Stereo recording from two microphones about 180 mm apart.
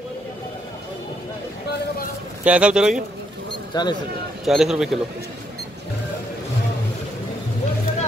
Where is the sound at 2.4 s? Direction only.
5° right (ahead or behind).